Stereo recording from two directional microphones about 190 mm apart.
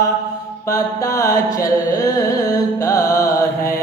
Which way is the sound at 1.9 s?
15° left (ahead or behind).